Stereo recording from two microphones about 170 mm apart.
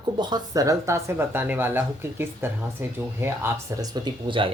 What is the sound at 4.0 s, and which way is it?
Speech, 30° right (ahead or behind).